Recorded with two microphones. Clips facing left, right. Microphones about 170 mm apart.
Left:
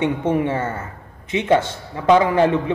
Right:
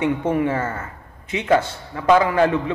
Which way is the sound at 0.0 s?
20° left (ahead or behind).